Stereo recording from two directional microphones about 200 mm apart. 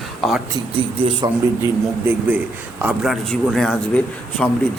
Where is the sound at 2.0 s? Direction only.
10° right (ahead or behind).